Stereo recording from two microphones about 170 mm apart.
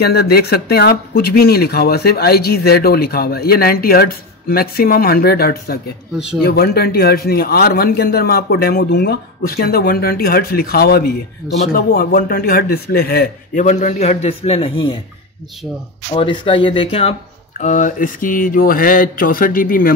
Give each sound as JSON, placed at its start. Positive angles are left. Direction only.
{"t": 0.0, "sound": "speech", "side_deg": 70}
{"t": 6.1, "sound": "speech", "side_deg": -5}
{"t": 6.4, "sound": "a man's voice", "side_deg": 65}
{"t": 13.7, "sound": "a man's voice", "side_deg": 45}
{"t": 16.1, "sound": "a man's voice", "side_deg": 30}
{"t": 17.6, "sound": "a man's voice", "side_deg": 45}